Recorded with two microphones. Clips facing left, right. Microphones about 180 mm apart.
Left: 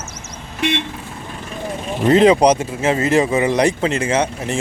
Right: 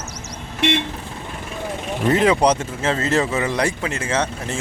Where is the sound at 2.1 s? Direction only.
20° left (ahead or behind).